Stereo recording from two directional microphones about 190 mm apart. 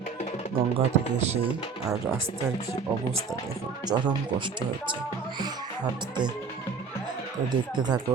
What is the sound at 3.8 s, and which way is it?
Speech, 25° right (ahead or behind).